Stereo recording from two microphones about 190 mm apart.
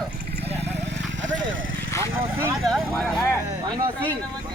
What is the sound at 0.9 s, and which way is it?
Vehicle, 70° right (ahead or behind).